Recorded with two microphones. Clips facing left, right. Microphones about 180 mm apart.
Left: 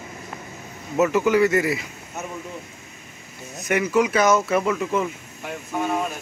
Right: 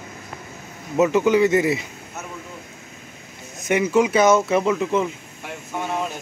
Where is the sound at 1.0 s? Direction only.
20° right (ahead or behind).